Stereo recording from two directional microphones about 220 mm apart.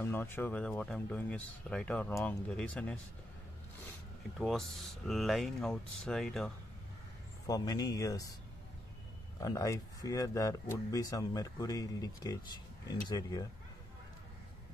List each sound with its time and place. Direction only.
0.0 s speech: 10° left (ahead or behind)
4.4 s speech: centre (ahead or behind)
7.4 s speech: 15° left (ahead or behind)
9.4 s speech: 15° left (ahead or behind)